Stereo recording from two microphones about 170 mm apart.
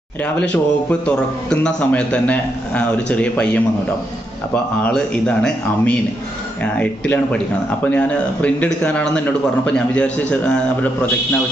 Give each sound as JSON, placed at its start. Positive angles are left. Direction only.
{"t": 0.2, "sound": "speech", "side_deg": 10}
{"t": 4.8, "sound": "speech", "side_deg": 5}